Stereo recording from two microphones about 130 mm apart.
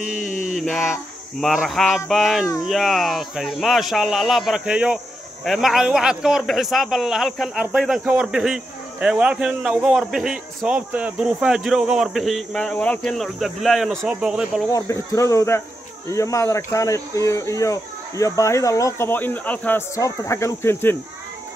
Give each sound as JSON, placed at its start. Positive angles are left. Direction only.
{"t": 0.0, "sound": "mantra", "side_deg": -5}
{"t": 0.6, "sound": "a sound", "side_deg": 0}
{"t": 1.4, "sound": "a man's voice", "side_deg": 0}
{"t": 14.7, "sound": "speech", "side_deg": 25}
{"t": 20.0, "sound": "speech", "side_deg": 20}